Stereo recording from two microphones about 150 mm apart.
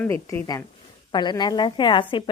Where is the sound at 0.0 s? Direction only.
20° left (ahead or behind).